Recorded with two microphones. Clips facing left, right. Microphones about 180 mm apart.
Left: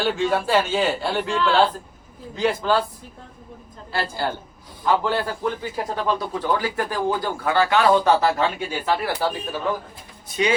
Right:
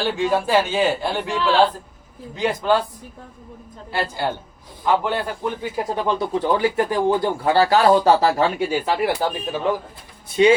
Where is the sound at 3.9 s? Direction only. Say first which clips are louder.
Right 2 dB; 15° right (ahead or behind); by 8.4 s 35° right (ahead or behind).